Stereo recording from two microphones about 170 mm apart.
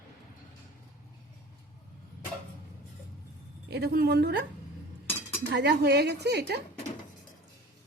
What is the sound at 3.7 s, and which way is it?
Speech, 70° right (ahead or behind).